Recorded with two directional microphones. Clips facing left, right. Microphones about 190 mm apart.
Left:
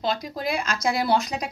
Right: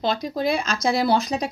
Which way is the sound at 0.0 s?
25° right (ahead or behind).